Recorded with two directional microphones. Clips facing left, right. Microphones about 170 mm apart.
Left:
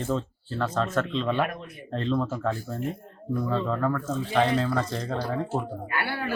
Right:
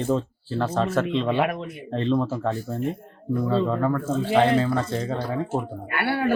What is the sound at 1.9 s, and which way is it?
Speech, 5° right (ahead or behind).